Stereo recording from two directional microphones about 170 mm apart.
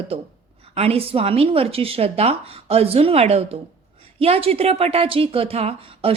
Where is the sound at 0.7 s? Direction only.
35° right (ahead or behind).